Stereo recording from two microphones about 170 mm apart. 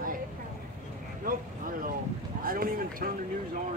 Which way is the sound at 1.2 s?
55° right (ahead or behind).